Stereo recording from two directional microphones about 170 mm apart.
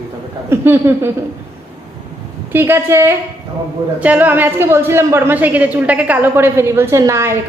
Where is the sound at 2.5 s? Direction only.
15° right (ahead or behind).